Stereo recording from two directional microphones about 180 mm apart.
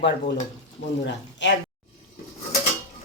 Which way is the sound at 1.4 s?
80° left.